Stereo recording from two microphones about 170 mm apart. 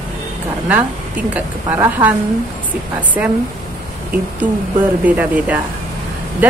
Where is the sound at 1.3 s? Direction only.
10° right (ahead or behind).